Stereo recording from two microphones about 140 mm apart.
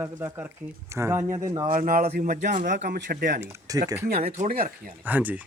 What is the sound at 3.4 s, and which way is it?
Speech, 25° right (ahead or behind).